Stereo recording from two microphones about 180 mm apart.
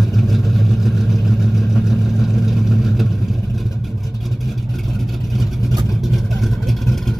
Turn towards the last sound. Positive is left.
turn(degrees=0)  # may be behind; listen again after turning